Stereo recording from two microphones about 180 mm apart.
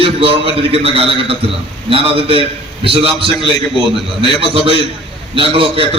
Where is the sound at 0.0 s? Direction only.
30° right (ahead or behind).